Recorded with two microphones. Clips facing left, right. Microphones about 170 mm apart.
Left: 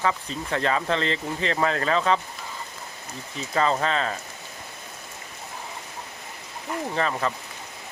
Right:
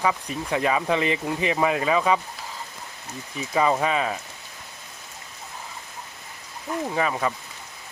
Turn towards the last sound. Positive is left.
turn(degrees=-10)  # may be behind; listen again after turning